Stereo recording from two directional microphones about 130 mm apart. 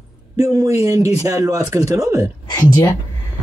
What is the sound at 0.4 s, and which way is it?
Speech, 25° right (ahead or behind).